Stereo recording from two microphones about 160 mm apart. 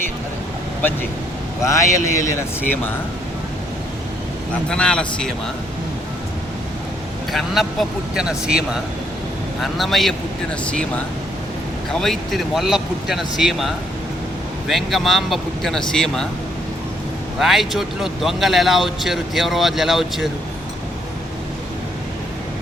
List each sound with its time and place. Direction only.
1.6 s speech: 20° left (ahead or behind)
4.7 s speech: 5° left (ahead or behind)
7.3 s speech: centre (ahead or behind)
17.4 s speech: centre (ahead or behind)